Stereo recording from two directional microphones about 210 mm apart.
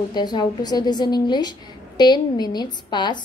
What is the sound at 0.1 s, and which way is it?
A woman's voice, 20° left (ahead or behind).